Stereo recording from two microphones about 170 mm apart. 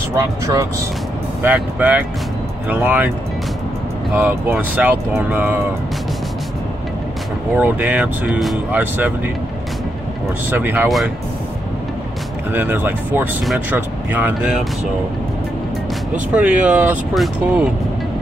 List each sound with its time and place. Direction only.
0.1 s speech: 20° right (ahead or behind)
4.1 s speech: 10° right (ahead or behind)
7.5 s speech: 10° right (ahead or behind)
10.5 s speech: 10° right (ahead or behind)
12.5 s speech: 10° right (ahead or behind)
16.1 s speech: 5° right (ahead or behind)